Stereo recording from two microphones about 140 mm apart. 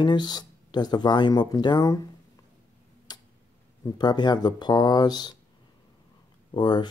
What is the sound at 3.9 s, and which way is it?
Speech, 30° left (ahead or behind).